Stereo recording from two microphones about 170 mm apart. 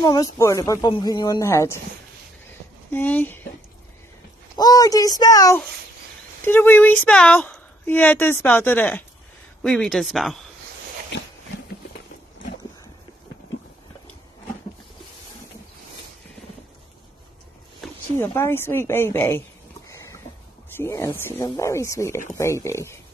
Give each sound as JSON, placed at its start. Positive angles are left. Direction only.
{"t": 0.0, "sound": "a woman's voice", "side_deg": 25}
{"t": 2.9, "sound": "speech", "side_deg": 10}
{"t": 4.6, "sound": "a woman's voice", "side_deg": 20}
{"t": 18.1, "sound": "speech", "side_deg": 15}
{"t": 19.9, "sound": "a sound", "side_deg": 15}
{"t": 20.7, "sound": "speech", "side_deg": 15}